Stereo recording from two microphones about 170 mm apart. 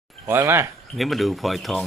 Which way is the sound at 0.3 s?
15° right (ahead or behind).